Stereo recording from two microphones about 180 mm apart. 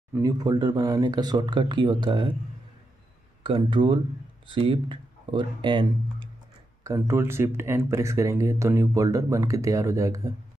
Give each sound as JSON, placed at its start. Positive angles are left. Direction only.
{"t": 0.1, "sound": "speech", "side_deg": -20}
{"t": 3.4, "sound": "speech", "side_deg": -30}
{"t": 6.8, "sound": "speech", "side_deg": -15}